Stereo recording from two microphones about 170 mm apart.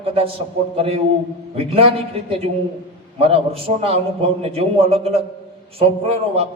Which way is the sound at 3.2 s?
35° right (ahead or behind).